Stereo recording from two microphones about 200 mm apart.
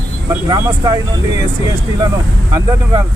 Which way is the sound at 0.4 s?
20° right (ahead or behind).